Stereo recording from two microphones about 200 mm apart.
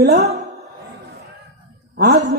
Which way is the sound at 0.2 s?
30° right (ahead or behind).